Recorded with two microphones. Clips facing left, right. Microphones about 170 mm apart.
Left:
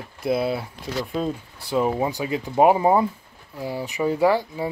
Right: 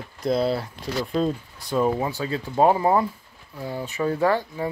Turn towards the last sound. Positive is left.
turn(degrees=10)  # may be behind; listen again after turning